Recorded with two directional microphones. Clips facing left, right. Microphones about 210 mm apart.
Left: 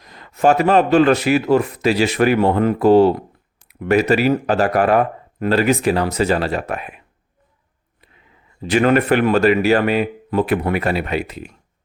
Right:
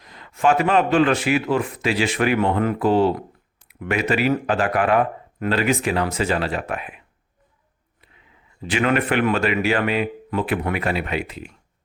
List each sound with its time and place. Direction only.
0.0 s speech: 40° left (ahead or behind)
8.6 s speech: 40° left (ahead or behind)